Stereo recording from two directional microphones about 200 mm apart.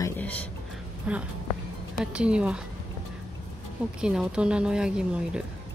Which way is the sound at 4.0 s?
5° right (ahead or behind).